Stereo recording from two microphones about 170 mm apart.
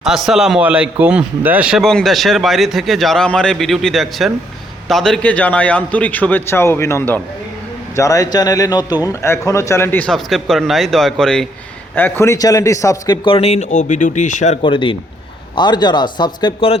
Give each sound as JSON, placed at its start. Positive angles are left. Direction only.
{"t": 0.3, "sound": "a man's voice", "side_deg": -5}
{"t": 13.2, "sound": "speech", "side_deg": 35}
{"t": 14.6, "sound": "a man's voice", "side_deg": 30}